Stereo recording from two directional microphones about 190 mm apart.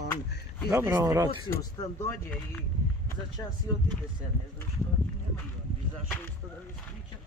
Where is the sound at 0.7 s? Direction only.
15° right (ahead or behind).